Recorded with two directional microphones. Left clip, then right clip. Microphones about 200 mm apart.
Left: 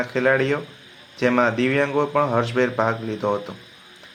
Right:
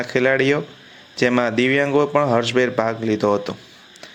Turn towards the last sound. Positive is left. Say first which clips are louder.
# right 5 dB
turn(degrees=-35)  # may be behind; listen again after turning